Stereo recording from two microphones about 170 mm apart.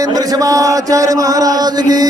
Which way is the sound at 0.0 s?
20° right (ahead or behind).